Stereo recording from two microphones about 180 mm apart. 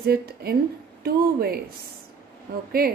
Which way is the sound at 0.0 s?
60° right (ahead or behind).